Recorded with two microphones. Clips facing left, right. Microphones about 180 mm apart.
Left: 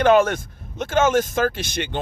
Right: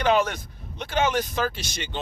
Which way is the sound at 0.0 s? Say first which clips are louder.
Left 6 dB; 50° left (ahead or behind).